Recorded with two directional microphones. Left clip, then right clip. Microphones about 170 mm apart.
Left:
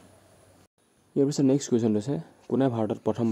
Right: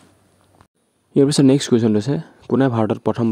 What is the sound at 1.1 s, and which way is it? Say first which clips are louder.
Speech: right 9 dB; 50° right (ahead or behind).